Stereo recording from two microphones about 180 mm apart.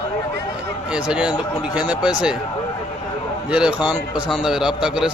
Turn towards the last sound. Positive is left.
turn(degrees=-5)  # may be behind; listen again after turning